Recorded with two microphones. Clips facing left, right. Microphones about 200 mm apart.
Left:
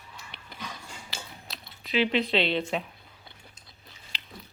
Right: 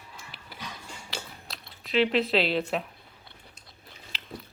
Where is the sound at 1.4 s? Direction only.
Centre (ahead or behind).